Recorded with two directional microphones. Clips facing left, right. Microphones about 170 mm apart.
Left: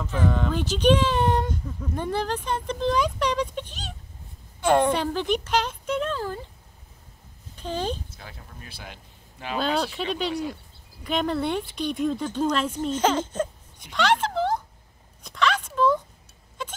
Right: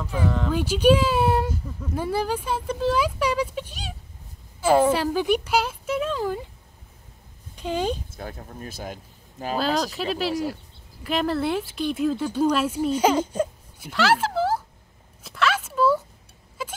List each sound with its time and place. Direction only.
0.0 s a child's voice: 5° right (ahead or behind)
7.5 s speech: 10° right (ahead or behind)
8.1 s speech: 50° right (ahead or behind)
9.6 s speech: 5° right (ahead or behind)
15.2 s a sound: 5° right (ahead or behind)